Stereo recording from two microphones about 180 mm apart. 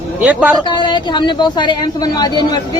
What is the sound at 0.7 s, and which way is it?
A woman's voice, 25° left (ahead or behind).